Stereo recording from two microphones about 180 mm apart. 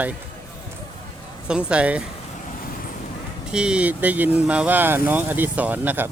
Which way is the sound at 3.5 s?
5° right (ahead or behind).